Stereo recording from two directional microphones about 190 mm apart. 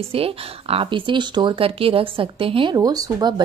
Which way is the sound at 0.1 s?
30° right (ahead or behind).